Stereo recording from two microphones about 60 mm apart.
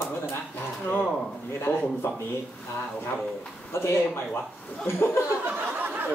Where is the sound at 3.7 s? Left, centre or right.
Left.